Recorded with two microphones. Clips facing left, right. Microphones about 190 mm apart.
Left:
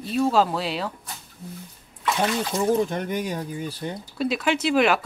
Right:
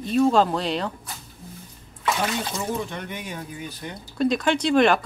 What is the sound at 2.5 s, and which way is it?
Speech, 45° left (ahead or behind).